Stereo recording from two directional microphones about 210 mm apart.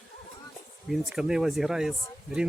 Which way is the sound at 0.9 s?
5° right (ahead or behind).